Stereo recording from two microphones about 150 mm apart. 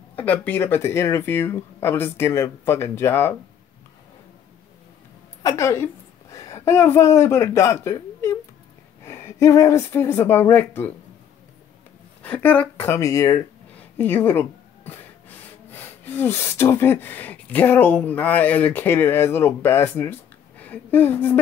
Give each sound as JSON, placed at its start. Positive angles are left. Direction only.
{"t": 0.1, "sound": "speech", "side_deg": 10}
{"t": 5.4, "sound": "a woman's voice", "side_deg": 20}
{"t": 12.2, "sound": "speech", "side_deg": 10}